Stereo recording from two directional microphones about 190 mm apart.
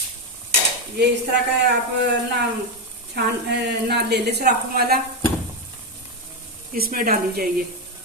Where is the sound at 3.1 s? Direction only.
60° right (ahead or behind).